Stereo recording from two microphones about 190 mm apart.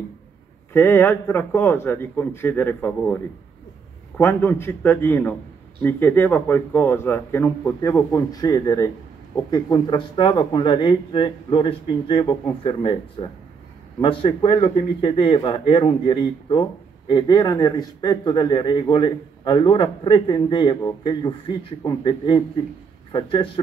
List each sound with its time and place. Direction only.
0.7 s a man's voice: 10° left (ahead or behind)
4.2 s a man's voice: 10° left (ahead or behind); by 23.6 s 25° left (ahead or behind)